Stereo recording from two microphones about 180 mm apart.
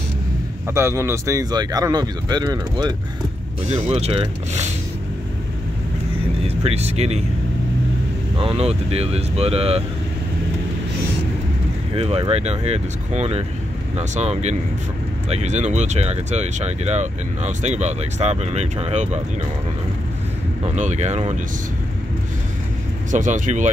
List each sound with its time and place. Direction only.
0.7 s speech: 15° right (ahead or behind)
3.6 s speech: 35° right (ahead or behind)
6.4 s speech: 35° right (ahead or behind)
8.4 s speech: 30° right (ahead or behind)
12.0 s speech: 35° right (ahead or behind)
20.7 s speech: 40° right (ahead or behind)
23.1 s speech: 45° right (ahead or behind)